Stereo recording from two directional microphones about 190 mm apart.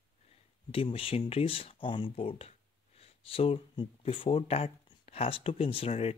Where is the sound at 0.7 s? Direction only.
30° left (ahead or behind).